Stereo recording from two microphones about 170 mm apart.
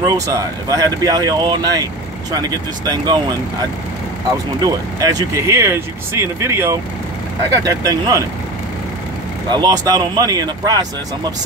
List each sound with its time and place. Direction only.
0.0 s speech: 20° right (ahead or behind)
4.6 s speech: 20° right (ahead or behind)
9.5 s speech: 25° right (ahead or behind)